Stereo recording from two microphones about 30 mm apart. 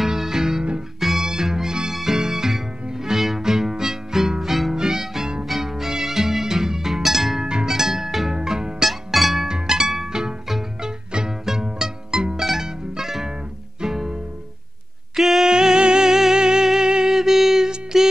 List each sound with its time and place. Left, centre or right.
0.1 s music: centre
0.9 s music: centre
1.2 s music: centre
4.4 s music: centre
8.4 s music: right
8.8 s music: centre
9.5 s music: centre
12.4 s music: centre
15.1 s music: centre
15.4 s music: centre